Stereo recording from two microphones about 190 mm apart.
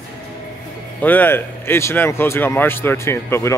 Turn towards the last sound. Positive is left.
turn(degrees=15)  # may be behind; listen again after turning